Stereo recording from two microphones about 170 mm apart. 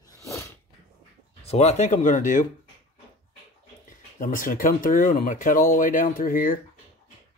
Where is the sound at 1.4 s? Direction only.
40° left (ahead or behind).